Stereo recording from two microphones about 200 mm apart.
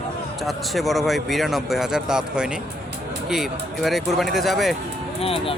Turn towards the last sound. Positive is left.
turn(degrees=30)  # may be behind; listen again after turning